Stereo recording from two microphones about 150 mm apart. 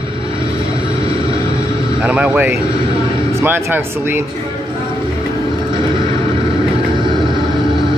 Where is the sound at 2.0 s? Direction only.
10° right (ahead or behind).